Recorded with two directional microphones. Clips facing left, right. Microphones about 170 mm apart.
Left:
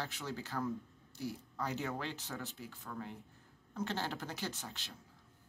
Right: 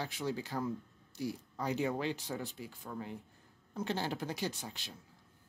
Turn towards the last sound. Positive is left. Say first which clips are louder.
# right 4 dB
turn(degrees=-15)  # may be behind; listen again after turning